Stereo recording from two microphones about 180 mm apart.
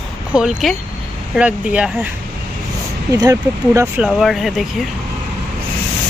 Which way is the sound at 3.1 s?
15° right (ahead or behind).